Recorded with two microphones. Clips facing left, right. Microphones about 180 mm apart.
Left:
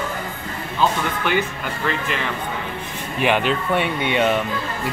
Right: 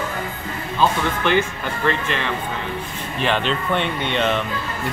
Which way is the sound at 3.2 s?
10° left (ahead or behind).